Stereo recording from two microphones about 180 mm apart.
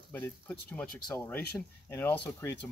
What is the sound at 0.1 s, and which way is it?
Speech, 10° left (ahead or behind).